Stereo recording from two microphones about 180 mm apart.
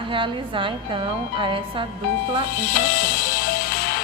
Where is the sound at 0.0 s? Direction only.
25° right (ahead or behind).